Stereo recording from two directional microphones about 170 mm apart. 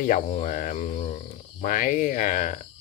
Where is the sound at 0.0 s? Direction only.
50° left (ahead or behind).